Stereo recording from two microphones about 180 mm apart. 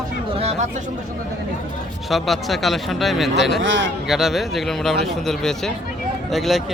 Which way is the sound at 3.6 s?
90° right.